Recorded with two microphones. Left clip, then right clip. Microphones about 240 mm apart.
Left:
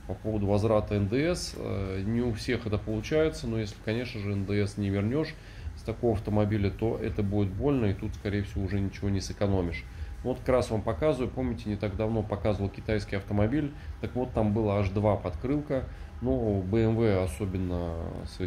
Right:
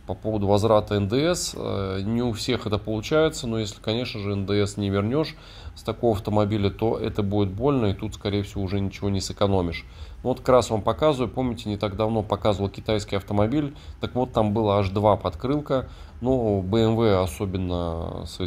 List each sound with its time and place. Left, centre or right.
0.3 s speech: right